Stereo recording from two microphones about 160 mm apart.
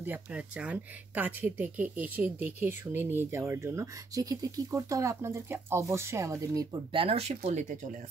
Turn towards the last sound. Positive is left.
turn(degrees=-50)  # may be behind; listen again after turning